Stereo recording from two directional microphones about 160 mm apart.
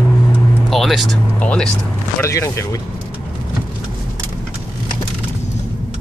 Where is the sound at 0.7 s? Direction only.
Centre (ahead or behind).